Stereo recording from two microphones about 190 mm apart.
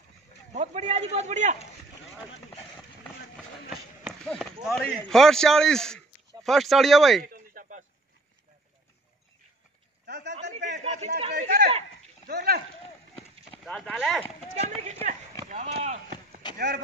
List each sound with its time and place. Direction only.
0.5 s a man's voice: 35° right (ahead or behind)
3.7 s run: centre (ahead or behind)
4.6 s a man's voice: 5° left (ahead or behind)
7.2 s a sound: 50° right (ahead or behind)
10.3 s a sound: 40° right (ahead or behind)
10.8 s a man's voice: 35° right (ahead or behind)
12.3 s speech: 55° right (ahead or behind)
13.7 s a man's voice: 5° left (ahead or behind)
14.6 s a man's voice: 35° right (ahead or behind)
15.4 s chop: 35° right (ahead or behind)
16.5 s speech: 60° right (ahead or behind)